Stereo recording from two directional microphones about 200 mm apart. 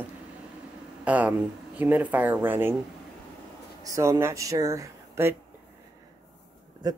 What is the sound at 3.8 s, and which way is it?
Speech, 15° right (ahead or behind).